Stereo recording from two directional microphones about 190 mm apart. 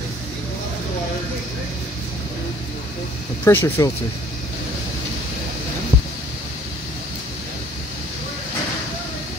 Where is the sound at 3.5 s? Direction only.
15° left (ahead or behind).